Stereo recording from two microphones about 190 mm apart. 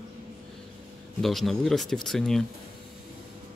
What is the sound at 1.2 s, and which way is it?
Speech, centre (ahead or behind).